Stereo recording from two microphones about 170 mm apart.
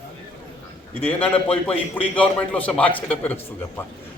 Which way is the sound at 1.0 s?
10° left (ahead or behind).